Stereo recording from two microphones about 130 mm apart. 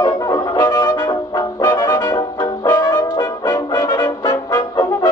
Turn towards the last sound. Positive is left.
turn(degrees=30)  # may be behind; listen again after turning